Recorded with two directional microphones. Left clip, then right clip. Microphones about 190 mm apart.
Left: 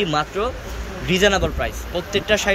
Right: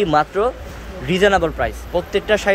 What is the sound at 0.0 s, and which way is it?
Speech, 25° right (ahead or behind).